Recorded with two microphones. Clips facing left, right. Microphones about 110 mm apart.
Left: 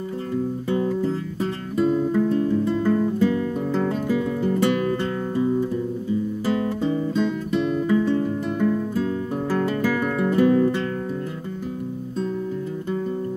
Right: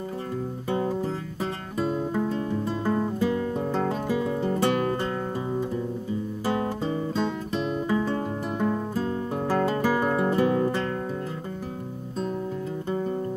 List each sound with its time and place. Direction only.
0.7 s music: 30° right (ahead or behind)
1.8 s guitar: 30° right (ahead or behind)
5.3 s guitar: 20° right (ahead or behind)
8.0 s music: 35° right (ahead or behind)